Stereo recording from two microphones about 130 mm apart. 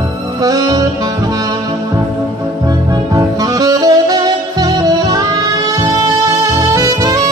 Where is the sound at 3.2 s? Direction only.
30° right (ahead or behind).